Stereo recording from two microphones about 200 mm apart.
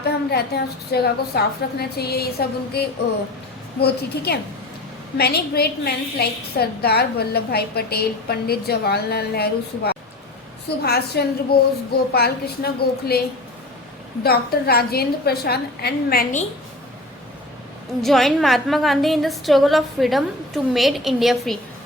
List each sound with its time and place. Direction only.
0.0 s a woman's voice: 55° left (ahead or behind)
14.3 s a woman's voice: 50° left (ahead or behind)
18.0 s a woman's voice: centre (ahead or behind)